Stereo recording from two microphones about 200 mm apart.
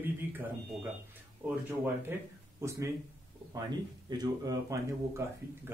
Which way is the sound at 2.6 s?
15° right (ahead or behind).